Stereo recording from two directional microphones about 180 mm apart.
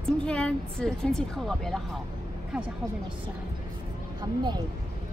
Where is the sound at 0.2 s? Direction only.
5° left (ahead or behind).